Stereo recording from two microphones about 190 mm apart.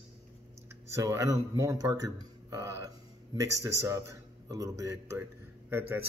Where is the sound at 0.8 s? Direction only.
15° right (ahead or behind).